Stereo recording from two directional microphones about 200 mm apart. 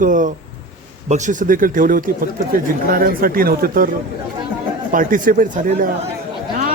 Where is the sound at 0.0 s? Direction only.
40° right (ahead or behind).